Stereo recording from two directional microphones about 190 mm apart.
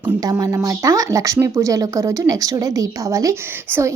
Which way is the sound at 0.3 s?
20° right (ahead or behind).